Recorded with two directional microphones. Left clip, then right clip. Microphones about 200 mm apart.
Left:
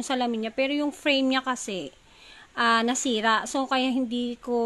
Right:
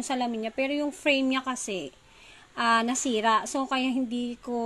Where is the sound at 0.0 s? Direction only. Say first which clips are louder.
Left 2 dB; 20° left (ahead or behind).